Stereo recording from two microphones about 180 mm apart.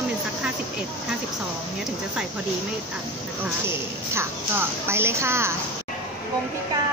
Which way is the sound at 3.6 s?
15° right (ahead or behind).